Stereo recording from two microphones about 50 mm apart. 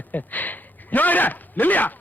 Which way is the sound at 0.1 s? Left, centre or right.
Left.